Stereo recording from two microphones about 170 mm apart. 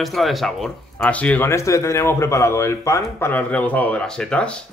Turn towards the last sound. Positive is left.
turn(degrees=5)  # may be behind; listen again after turning